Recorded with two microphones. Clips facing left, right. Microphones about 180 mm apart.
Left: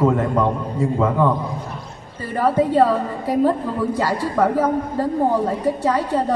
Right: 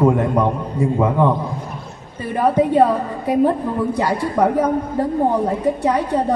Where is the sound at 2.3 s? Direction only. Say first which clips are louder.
Right 2 dB; 20° right (ahead or behind).